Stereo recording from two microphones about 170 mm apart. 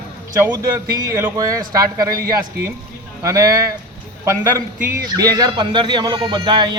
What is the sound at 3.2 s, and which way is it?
Speech, 20° right (ahead or behind).